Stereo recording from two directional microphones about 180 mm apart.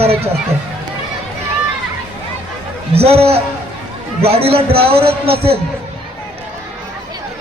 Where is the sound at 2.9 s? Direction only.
35° right (ahead or behind).